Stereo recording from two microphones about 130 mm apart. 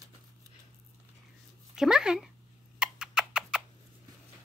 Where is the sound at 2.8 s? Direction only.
5° right (ahead or behind).